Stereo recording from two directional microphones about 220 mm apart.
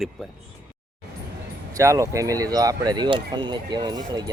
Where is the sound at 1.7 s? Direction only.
15° right (ahead or behind).